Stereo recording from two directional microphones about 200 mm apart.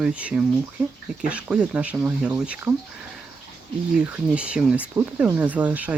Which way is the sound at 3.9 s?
5° right (ahead or behind).